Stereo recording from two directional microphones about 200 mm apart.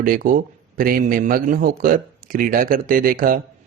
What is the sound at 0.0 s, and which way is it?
Speech, 45° right (ahead or behind).